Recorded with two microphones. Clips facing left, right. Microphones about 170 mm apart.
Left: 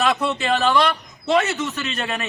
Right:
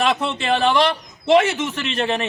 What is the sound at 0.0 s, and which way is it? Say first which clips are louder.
Speech: even; 25° right (ahead or behind).